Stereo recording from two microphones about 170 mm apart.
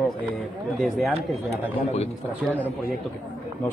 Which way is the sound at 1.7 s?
35° left (ahead or behind).